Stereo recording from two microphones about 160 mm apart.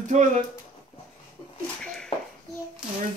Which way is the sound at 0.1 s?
50° right (ahead or behind).